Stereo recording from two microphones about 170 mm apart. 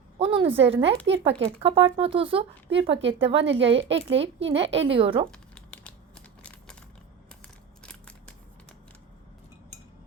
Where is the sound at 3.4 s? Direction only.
90° right.